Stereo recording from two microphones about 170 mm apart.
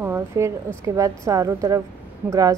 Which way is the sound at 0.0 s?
15° right (ahead or behind).